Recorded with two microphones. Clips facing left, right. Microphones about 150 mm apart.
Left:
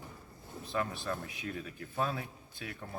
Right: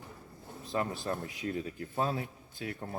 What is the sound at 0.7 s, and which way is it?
Speech, 25° right (ahead or behind).